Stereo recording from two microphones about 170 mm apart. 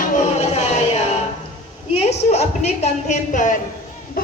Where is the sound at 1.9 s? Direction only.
40° left (ahead or behind).